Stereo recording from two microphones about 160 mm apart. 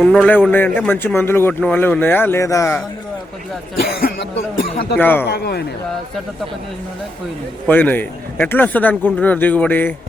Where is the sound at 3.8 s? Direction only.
75° left (ahead or behind).